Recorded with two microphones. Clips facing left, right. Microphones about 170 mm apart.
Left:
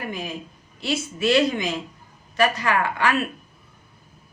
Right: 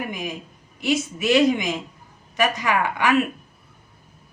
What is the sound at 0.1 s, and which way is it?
Speech, 15° right (ahead or behind).